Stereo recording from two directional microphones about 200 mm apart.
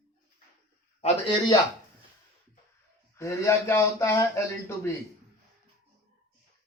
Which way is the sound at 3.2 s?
15° left (ahead or behind).